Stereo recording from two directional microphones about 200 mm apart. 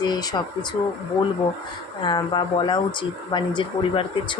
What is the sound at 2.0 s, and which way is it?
Speech, 20° left (ahead or behind).